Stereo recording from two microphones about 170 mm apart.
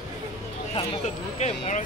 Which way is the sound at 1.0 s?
40° left (ahead or behind).